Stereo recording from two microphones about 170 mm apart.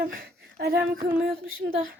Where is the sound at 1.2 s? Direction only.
60° right (ahead or behind).